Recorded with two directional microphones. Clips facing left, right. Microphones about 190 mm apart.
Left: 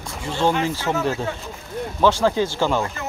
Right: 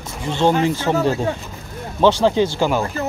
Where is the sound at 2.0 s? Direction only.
25° right (ahead or behind).